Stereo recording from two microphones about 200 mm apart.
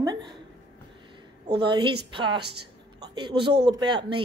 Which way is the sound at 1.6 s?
25° right (ahead or behind).